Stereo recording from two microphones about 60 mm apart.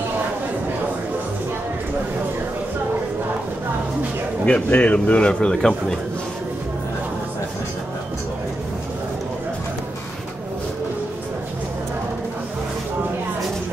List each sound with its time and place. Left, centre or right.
4.5 s speech: centre